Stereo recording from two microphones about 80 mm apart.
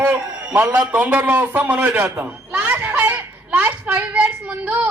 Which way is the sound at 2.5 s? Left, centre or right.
Centre.